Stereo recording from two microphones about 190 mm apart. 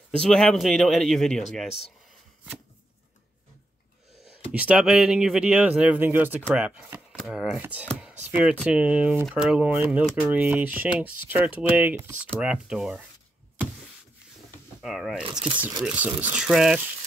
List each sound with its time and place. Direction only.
0.2 s speech: 5° left (ahead or behind)
4.5 s speech: 5° right (ahead or behind)
14.8 s speech: centre (ahead or behind)
15.2 s speech: 25° right (ahead or behind)
15.8 s speech: 5° right (ahead or behind)